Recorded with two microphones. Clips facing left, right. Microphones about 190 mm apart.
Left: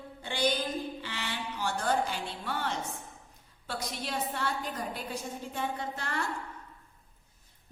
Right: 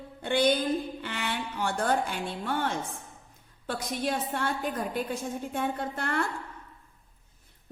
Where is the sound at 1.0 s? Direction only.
55° right (ahead or behind).